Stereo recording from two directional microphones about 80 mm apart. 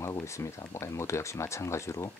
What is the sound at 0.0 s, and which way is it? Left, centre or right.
Speech, left.